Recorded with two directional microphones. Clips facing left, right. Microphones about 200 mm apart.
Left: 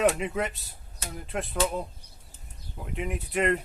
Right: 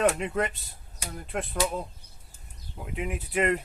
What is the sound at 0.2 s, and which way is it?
Speech, centre (ahead or behind).